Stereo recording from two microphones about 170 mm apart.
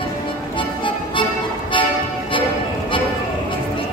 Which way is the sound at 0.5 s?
30° left (ahead or behind).